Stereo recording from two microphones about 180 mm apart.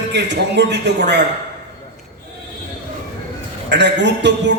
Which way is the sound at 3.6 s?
75° right (ahead or behind).